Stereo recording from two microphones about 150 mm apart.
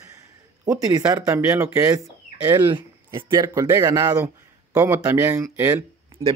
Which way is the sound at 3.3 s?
20° right (ahead or behind).